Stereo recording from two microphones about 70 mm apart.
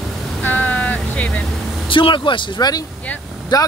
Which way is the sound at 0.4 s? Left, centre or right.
Left.